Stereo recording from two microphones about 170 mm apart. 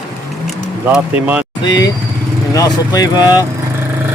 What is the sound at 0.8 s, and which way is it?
Speech, 10° right (ahead or behind).